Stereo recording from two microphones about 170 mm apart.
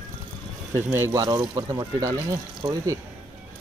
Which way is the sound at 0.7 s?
15° right (ahead or behind).